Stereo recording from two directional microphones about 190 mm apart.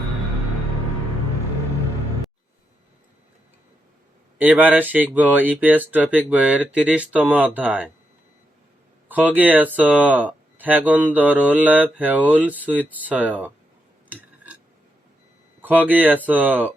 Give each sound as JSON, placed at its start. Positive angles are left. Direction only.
{"t": 4.4, "sound": "speech", "side_deg": -10}
{"t": 9.0, "sound": "speech", "side_deg": -10}
{"t": 14.1, "sound": "a sound", "side_deg": -10}
{"t": 15.6, "sound": "speech", "side_deg": -10}